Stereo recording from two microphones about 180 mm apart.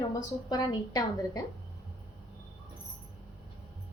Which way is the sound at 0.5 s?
20° left (ahead or behind).